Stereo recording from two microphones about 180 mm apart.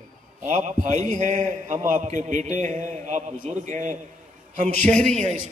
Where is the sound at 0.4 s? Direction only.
40° right (ahead or behind).